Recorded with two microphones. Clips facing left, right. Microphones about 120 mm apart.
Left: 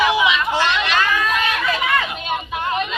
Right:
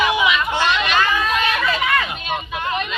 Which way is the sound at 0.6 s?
Centre (ahead or behind).